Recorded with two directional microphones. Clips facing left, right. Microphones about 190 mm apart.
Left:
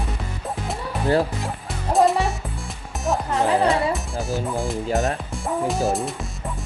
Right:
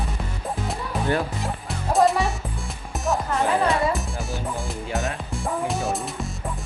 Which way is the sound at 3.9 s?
Centre (ahead or behind).